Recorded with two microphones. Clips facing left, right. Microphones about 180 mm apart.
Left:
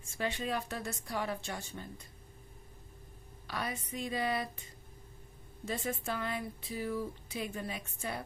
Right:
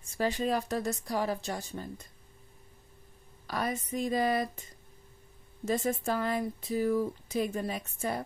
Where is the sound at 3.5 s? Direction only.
45° right (ahead or behind).